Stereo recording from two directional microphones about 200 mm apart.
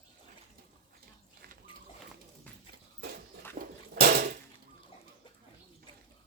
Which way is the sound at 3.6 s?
40° right (ahead or behind).